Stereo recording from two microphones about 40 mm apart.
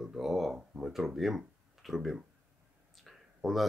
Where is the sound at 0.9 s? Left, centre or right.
Centre.